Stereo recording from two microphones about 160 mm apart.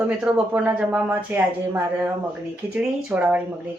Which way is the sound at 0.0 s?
5° right (ahead or behind).